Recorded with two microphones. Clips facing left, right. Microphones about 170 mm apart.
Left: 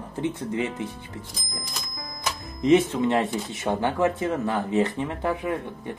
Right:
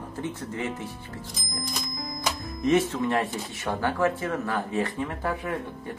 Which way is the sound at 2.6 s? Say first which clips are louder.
Left 4 dB; 20° left (ahead or behind).